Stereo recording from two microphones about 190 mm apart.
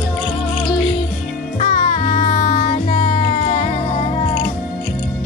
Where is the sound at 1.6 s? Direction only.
25° left (ahead or behind).